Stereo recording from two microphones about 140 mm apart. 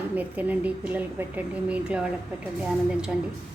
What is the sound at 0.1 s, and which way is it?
A woman's voice, 10° right (ahead or behind).